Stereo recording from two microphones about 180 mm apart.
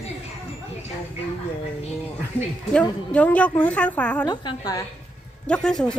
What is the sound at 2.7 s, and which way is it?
Speech, 5° left (ahead or behind).